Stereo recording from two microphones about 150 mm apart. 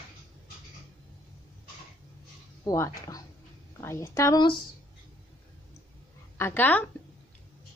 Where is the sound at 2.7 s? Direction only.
25° left (ahead or behind).